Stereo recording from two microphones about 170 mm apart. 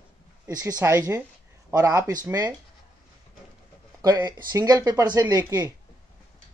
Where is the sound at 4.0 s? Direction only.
20° right (ahead or behind).